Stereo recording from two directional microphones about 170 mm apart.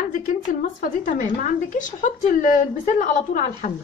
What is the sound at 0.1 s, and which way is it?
A woman's voice, 50° left (ahead or behind).